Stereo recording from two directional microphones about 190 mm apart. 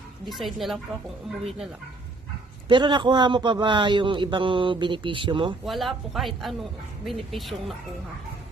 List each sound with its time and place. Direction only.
0.3 s speech: centre (ahead or behind)
2.6 s a man's voice: 25° right (ahead or behind)
5.6 s speech: centre (ahead or behind)